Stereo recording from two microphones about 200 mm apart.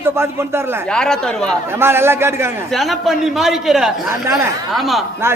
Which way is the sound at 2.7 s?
Centre (ahead or behind).